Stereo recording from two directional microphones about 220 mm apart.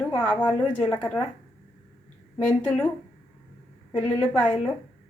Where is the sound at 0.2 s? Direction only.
10° left (ahead or behind).